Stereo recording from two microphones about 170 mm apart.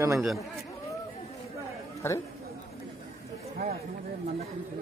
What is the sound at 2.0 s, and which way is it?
Speech, 15° left (ahead or behind).